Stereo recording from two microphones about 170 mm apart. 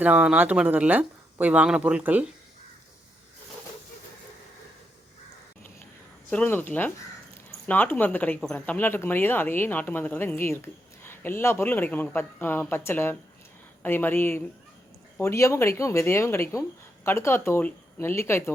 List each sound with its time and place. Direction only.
0.0 s speech: 10° right (ahead or behind)
6.3 s speech: 10° left (ahead or behind)